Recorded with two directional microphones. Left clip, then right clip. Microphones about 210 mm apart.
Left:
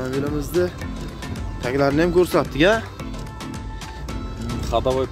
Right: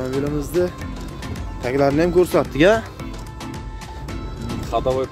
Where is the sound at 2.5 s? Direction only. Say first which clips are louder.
Right 4 dB; 10° right (ahead or behind).